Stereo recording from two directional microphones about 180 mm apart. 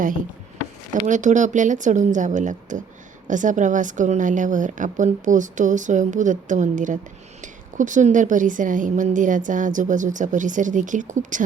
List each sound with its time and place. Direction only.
1.0 s a woman's voice: 45° right (ahead or behind)